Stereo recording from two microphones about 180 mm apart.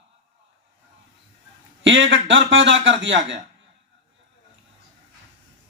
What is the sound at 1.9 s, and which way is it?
A man's voice, 90° right.